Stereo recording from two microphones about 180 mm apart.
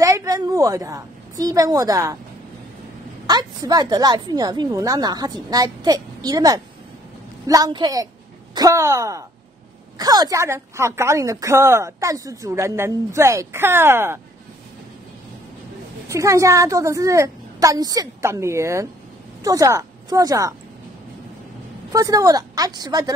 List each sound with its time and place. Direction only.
0.0 s a woman's voice: 20° right (ahead or behind)
3.3 s a woman's voice: 20° right (ahead or behind)
16.1 s a woman's voice: 15° right (ahead or behind)
21.9 s a woman's voice: 20° right (ahead or behind)